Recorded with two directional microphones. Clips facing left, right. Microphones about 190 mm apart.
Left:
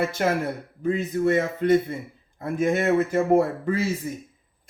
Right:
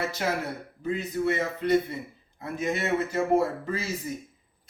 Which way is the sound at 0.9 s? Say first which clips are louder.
Left 5 dB; 50° left (ahead or behind).